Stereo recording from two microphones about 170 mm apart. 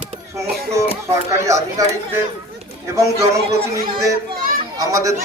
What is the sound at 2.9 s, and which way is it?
Speech, 20° right (ahead or behind).